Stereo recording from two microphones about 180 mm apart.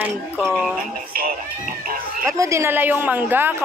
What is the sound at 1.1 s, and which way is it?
Speech, 55° right (ahead or behind).